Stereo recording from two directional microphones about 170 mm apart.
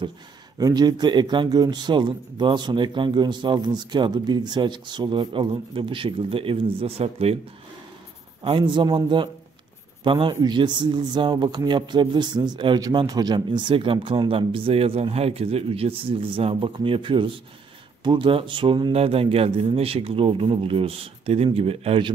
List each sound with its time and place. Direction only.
0.6 s speech: 20° right (ahead or behind)
8.4 s speech: 30° right (ahead or behind)